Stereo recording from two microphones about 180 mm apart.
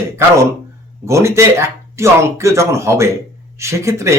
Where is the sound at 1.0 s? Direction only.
15° right (ahead or behind).